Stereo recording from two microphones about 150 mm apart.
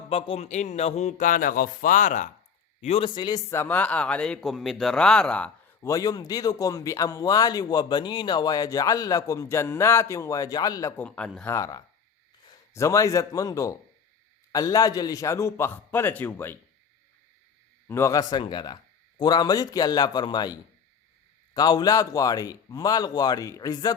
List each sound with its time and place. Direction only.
0.1 s speech: 40° left (ahead or behind); by 2.3 s 55° left (ahead or behind)
2.8 s speech: 40° left (ahead or behind)
3.2 s speech: 30° left (ahead or behind)
3.5 s a man's voice: 15° left (ahead or behind)
5.8 s speech: 25° left (ahead or behind)
10.9 s a man's voice: 10° left (ahead or behind)
11.5 s a man's voice: 20° left (ahead or behind)
17.8 s speech: 20° left (ahead or behind)